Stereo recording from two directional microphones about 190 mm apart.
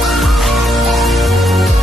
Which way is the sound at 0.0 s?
Centre (ahead or behind).